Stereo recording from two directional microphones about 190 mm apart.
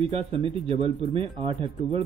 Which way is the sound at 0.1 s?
30° right (ahead or behind).